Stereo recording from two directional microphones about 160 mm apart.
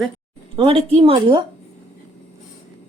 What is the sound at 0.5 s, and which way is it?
Speech, 35° right (ahead or behind).